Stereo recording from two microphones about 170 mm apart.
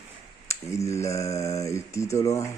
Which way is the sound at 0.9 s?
20° left (ahead or behind).